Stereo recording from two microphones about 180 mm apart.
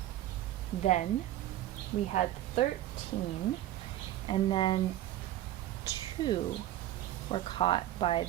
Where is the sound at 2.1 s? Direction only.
40° left (ahead or behind).